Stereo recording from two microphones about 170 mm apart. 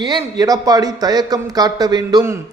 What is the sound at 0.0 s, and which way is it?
A man's voice, 25° right (ahead or behind).